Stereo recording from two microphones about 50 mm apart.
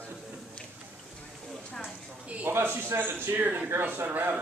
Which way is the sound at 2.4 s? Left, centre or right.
Right.